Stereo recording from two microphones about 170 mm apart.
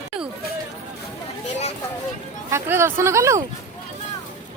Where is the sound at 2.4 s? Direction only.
15° right (ahead or behind).